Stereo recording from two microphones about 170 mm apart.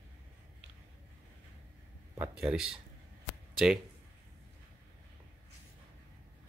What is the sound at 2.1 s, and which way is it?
Speech, 5° right (ahead or behind).